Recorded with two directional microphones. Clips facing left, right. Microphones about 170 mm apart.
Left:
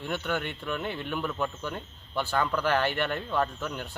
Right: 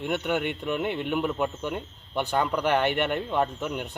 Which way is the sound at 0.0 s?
15° right (ahead or behind).